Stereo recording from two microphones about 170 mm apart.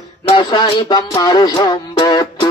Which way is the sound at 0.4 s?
25° left (ahead or behind).